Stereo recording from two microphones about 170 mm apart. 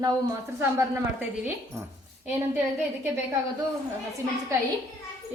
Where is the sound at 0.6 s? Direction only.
15° right (ahead or behind).